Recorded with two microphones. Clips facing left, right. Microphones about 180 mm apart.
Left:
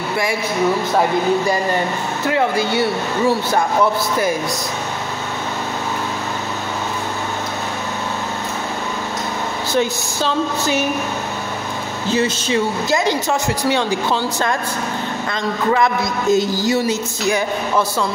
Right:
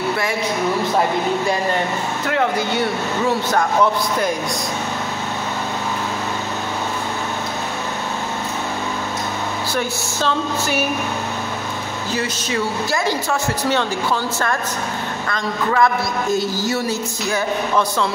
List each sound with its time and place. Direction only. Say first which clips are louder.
2.2 s speech: left 3 dB; 10° left (ahead or behind)
12.1 s a man's voice: left 6 dB; 25° left (ahead or behind)
15.2 s a man's voice: left 3 dB; 20° left (ahead or behind)